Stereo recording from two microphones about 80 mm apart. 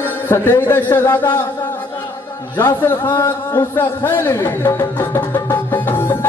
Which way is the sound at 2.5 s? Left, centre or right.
Left.